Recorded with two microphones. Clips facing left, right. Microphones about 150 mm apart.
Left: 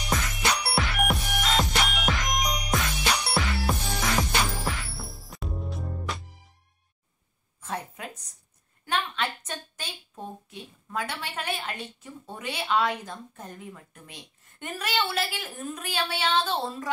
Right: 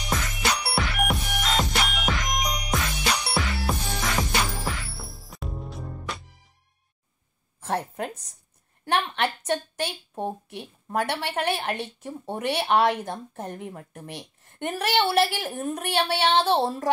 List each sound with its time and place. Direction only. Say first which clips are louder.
0.0 s music: even; centre (ahead or behind)
7.6 s a sound: right 7 dB; 55° right (ahead or behind)
8.8 s a woman's voice: right 4 dB; 60° right (ahead or behind)